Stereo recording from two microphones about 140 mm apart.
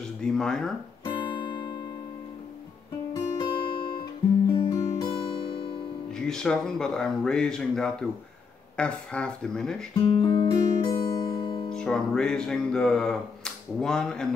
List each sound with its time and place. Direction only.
0.2 s speech: 5° left (ahead or behind)
1.0 s guitar: 35° left (ahead or behind)
3.1 s guitar: 35° left (ahead or behind)
4.6 s music: 40° left (ahead or behind)
6.1 s speech: 5° left (ahead or behind)
10.0 s music: 35° left (ahead or behind)
11.7 s music: 5° left (ahead or behind)